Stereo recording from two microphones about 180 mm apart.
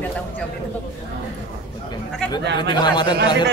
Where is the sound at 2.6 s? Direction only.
25° left (ahead or behind).